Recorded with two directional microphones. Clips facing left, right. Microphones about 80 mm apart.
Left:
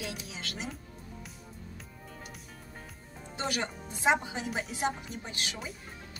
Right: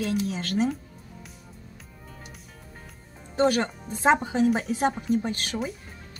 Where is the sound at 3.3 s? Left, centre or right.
Right.